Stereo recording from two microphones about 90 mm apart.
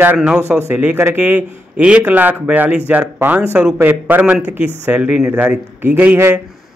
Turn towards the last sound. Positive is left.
turn(degrees=-20)  # may be behind; listen again after turning